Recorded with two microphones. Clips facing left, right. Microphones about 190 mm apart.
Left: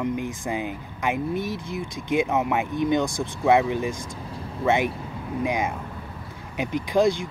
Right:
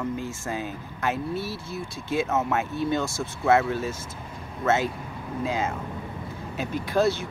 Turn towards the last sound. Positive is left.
turn(degrees=15)  # may be behind; listen again after turning